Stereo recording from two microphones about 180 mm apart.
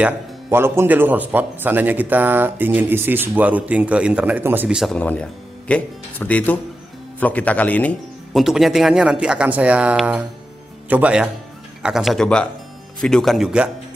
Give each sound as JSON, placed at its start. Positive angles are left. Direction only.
{"t": 0.0, "sound": "speech", "side_deg": -15}